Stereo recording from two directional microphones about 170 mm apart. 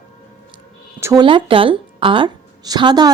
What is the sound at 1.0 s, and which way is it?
Speech, 15° right (ahead or behind).